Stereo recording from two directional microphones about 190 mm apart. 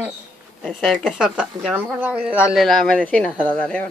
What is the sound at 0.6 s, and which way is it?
A woman's voice, centre (ahead or behind).